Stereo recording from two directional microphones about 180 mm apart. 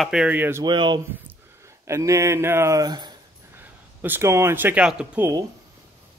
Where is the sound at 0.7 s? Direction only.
25° right (ahead or behind); by 5.3 s 5° right (ahead or behind).